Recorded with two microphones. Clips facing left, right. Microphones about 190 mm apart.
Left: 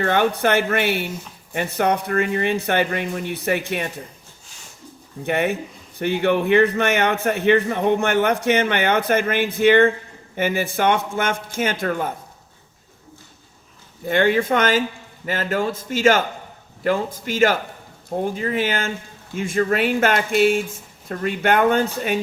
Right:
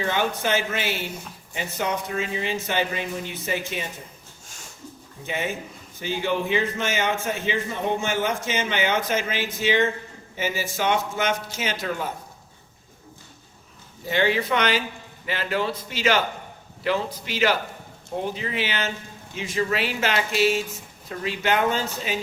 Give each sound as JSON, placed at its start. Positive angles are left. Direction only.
{"t": 0.0, "sound": "a man's voice", "side_deg": 55}
{"t": 5.2, "sound": "a man's voice", "side_deg": 60}
{"t": 14.1, "sound": "speech", "side_deg": 50}